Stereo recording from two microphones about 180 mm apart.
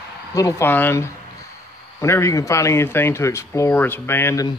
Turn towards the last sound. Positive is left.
turn(degrees=15)  # may be behind; listen again after turning